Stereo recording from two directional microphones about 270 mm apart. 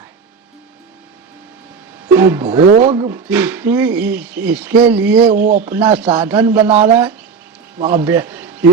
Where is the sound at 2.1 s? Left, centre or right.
Centre.